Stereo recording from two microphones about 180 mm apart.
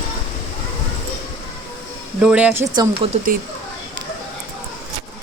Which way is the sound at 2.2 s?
5° right (ahead or behind).